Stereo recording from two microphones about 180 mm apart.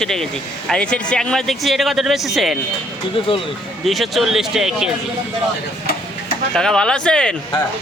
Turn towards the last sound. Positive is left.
turn(degrees=5)  # may be behind; listen again after turning